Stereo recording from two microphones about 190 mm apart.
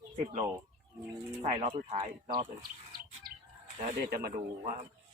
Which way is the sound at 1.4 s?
35° right (ahead or behind).